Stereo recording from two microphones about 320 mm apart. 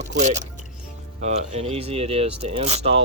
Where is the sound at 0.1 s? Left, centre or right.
Right.